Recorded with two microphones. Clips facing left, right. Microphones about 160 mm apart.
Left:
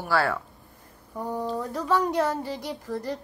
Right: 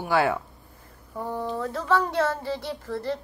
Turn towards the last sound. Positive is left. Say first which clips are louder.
# right 1 dB
turn(degrees=15)  # may be behind; listen again after turning